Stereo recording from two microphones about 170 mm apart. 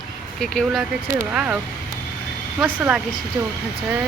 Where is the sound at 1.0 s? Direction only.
15° right (ahead or behind).